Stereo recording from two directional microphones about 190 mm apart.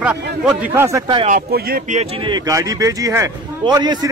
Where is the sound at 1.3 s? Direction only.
50° right (ahead or behind).